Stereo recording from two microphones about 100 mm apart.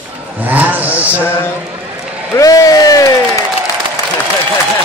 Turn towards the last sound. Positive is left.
turn(degrees=35)  # may be behind; listen again after turning